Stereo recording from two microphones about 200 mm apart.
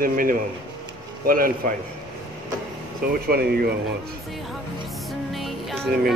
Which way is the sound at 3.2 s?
50° right (ahead or behind).